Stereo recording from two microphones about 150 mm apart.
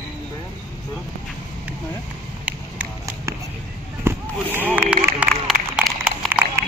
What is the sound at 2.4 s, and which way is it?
Run, 10° right (ahead or behind).